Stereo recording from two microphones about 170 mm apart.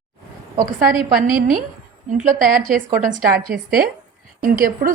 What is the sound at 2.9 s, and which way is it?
Speech, 50° right (ahead or behind).